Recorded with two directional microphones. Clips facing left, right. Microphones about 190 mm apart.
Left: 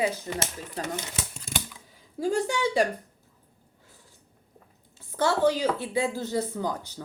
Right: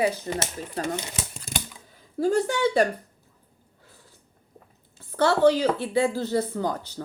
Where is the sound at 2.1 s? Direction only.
15° left (ahead or behind).